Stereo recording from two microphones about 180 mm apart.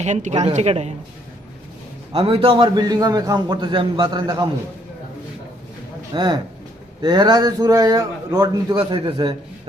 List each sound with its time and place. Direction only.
0.0 s a woman's voice: 40° right (ahead or behind)
2.1 s a man's voice: 30° right (ahead or behind)
6.1 s a man's voice: 25° right (ahead or behind)